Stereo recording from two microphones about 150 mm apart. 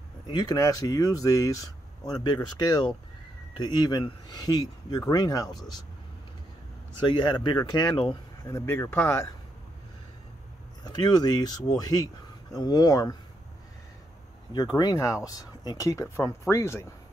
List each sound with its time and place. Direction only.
0.3 s speech: 30° left (ahead or behind)
7.1 s speech: 30° left (ahead or behind)
8.5 s speech: 15° left (ahead or behind)
10.8 s speech: 25° left (ahead or behind)
14.5 s speech: 25° left (ahead or behind)